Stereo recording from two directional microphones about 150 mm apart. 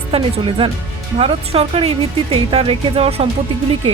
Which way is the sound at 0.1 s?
35° right (ahead or behind).